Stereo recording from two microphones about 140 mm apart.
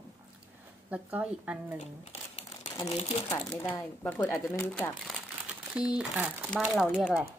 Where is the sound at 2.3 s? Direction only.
45° left (ahead or behind).